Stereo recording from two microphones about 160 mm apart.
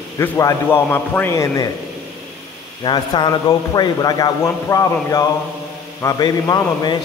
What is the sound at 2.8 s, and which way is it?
Speech, 25° left (ahead or behind).